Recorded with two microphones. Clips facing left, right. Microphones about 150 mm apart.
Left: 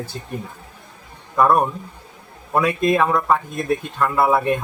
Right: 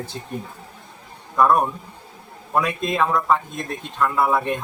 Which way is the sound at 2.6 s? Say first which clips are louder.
Left 5 dB; 5° left (ahead or behind).